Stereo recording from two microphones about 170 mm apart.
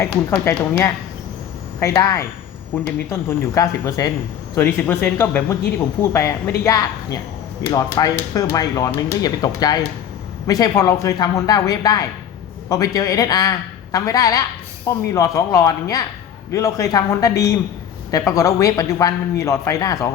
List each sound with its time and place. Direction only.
0.0 s speech: 15° left (ahead or behind)